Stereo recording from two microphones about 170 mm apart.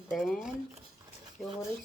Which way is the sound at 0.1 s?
Centre (ahead or behind).